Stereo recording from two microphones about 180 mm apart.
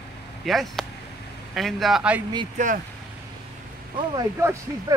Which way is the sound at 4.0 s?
20° right (ahead or behind).